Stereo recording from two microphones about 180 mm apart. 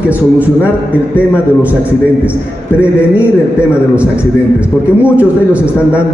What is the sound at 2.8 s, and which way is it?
A man's voice, 5° right (ahead or behind).